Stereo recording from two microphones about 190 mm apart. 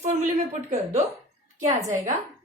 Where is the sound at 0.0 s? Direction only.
35° right (ahead or behind).